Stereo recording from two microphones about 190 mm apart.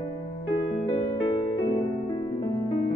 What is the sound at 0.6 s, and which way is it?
Music, 25° left (ahead or behind).